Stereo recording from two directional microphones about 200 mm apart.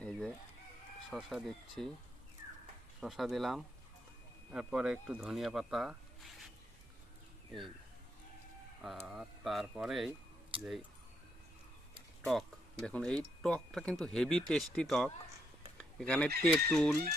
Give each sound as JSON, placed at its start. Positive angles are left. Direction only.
{"t": 0.0, "sound": "chicken", "side_deg": 5}
{"t": 1.1, "sound": "speech", "side_deg": 0}
{"t": 3.0, "sound": "speech", "side_deg": 0}
{"t": 8.8, "sound": "speech", "side_deg": -5}
{"t": 12.2, "sound": "speech", "side_deg": 0}
{"t": 15.8, "sound": "chicken", "side_deg": 5}
{"t": 16.4, "sound": "speech", "side_deg": 5}